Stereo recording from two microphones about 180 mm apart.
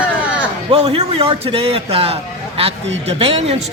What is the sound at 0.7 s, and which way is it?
A man's voice, 30° right (ahead or behind).